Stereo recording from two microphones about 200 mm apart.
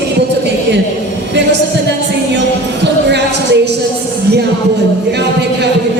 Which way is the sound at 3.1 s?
60° right (ahead or behind).